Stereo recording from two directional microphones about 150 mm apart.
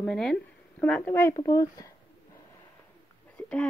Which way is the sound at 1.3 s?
25° left (ahead or behind).